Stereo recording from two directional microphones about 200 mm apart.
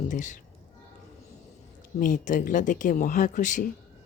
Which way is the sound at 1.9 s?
40° left (ahead or behind).